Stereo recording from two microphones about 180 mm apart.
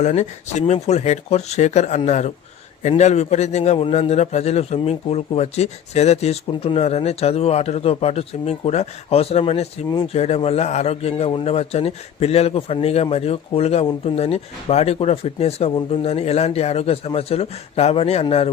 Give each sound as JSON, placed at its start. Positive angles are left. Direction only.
{"t": 0.0, "sound": "a man's voice", "side_deg": 40}